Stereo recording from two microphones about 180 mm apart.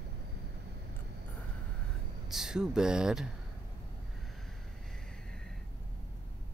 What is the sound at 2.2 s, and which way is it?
Speech, centre (ahead or behind).